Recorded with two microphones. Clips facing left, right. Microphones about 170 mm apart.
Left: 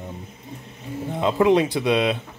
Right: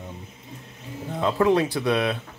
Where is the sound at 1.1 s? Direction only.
15° left (ahead or behind).